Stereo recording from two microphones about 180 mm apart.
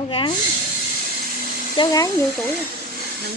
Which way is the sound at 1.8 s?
30° left (ahead or behind).